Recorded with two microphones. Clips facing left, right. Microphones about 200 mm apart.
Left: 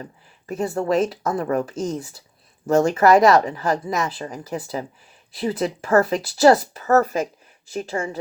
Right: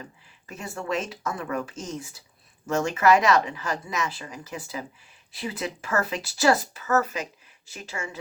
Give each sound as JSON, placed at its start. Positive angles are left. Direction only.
{"t": 0.0, "sound": "a woman's voice", "side_deg": 40}
{"t": 7.0, "sound": "a woman's voice", "side_deg": 45}